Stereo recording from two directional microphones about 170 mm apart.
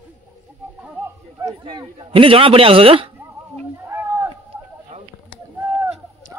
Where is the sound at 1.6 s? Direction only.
30° right (ahead or behind).